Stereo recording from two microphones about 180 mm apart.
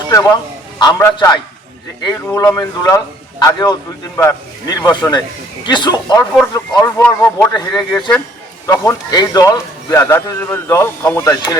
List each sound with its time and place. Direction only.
0.1 s a man's voice: 20° left (ahead or behind)